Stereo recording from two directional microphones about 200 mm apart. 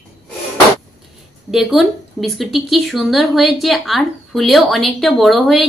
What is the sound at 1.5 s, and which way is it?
A woman's voice, centre (ahead or behind).